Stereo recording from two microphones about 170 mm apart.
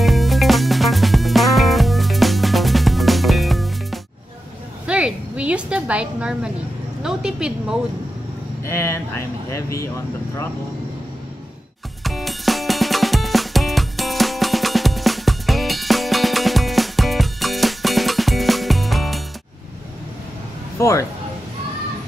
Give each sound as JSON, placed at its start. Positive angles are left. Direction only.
{"t": 0.0, "sound": "music", "side_deg": 0}
{"t": 4.8, "sound": "a sound", "side_deg": -5}
{"t": 7.0, "sound": "a woman's voice", "side_deg": -5}
{"t": 8.6, "sound": "speech", "side_deg": 15}
{"t": 12.0, "sound": "music", "side_deg": 0}
{"t": 20.7, "sound": "speech", "side_deg": 15}